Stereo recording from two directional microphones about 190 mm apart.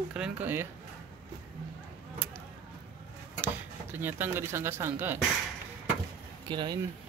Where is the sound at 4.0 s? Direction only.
10° right (ahead or behind).